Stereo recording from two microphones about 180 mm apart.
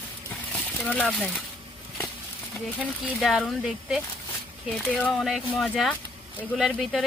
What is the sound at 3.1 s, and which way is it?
Speech, centre (ahead or behind).